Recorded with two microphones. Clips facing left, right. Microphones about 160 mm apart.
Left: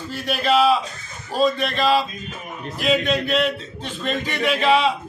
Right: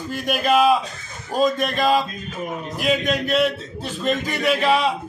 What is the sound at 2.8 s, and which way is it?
Speech, 45° right (ahead or behind).